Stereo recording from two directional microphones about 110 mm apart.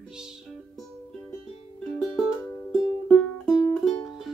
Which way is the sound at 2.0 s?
Centre (ahead or behind).